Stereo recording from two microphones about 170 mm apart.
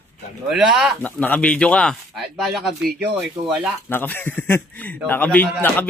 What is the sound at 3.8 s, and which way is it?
Speech, 10° left (ahead or behind).